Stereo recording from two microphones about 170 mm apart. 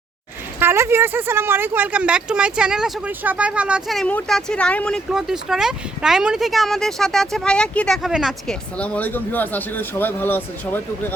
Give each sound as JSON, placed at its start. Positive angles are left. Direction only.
{"t": 0.6, "sound": "speech", "side_deg": -15}
{"t": 8.8, "sound": "speech", "side_deg": 10}